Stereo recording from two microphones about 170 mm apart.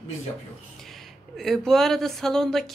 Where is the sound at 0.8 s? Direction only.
Centre (ahead or behind).